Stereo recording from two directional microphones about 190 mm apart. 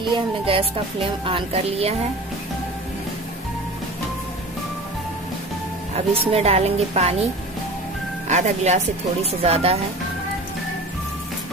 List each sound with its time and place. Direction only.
0.0 s a woman's voice: 30° right (ahead or behind)
5.9 s a woman's voice: 35° right (ahead or behind)
8.3 s a woman's voice: 40° right (ahead or behind)